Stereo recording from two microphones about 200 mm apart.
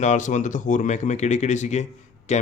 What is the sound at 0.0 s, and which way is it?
Speech, 40° left (ahead or behind).